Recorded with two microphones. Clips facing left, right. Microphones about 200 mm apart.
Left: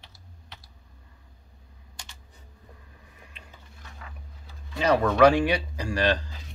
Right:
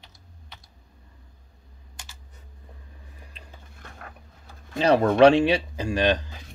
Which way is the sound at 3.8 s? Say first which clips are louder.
Right 3 dB; 55° right (ahead or behind).